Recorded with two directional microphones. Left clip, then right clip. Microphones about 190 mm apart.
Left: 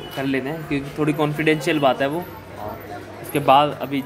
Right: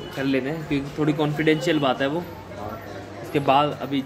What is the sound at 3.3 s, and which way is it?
Speech, 15° left (ahead or behind).